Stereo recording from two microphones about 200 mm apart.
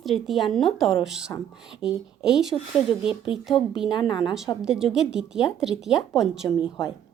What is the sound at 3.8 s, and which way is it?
Speech, 20° left (ahead or behind).